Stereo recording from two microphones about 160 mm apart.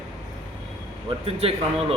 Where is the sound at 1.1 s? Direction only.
40° right (ahead or behind).